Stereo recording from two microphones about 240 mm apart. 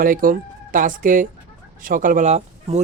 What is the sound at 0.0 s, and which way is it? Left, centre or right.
A man's voice, right.